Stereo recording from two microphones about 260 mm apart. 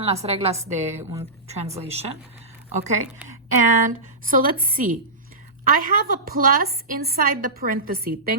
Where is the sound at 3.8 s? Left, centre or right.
Right.